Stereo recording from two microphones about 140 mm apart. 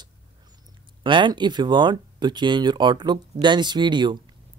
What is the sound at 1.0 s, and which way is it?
Speech, 35° right (ahead or behind).